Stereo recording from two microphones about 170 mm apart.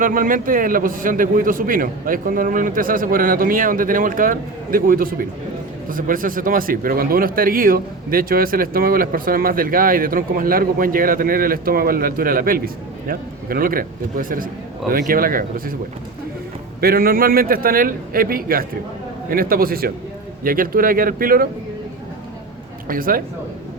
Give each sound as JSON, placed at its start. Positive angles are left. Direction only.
{"t": 0.0, "sound": "speech", "side_deg": -55}
{"t": 16.8, "sound": "speech", "side_deg": -60}
{"t": 22.9, "sound": "speech", "side_deg": -55}